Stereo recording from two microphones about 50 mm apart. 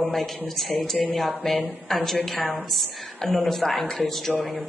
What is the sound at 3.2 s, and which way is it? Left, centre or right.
Speech, centre.